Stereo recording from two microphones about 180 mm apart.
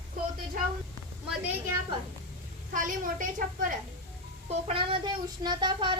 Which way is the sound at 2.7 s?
50° right (ahead or behind).